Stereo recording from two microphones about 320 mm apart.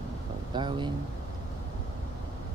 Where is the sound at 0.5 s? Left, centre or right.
Centre.